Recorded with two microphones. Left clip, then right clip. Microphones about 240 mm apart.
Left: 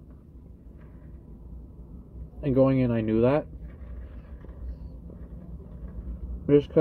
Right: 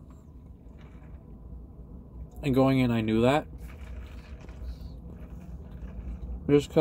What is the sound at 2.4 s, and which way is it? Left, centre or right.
Speech, right.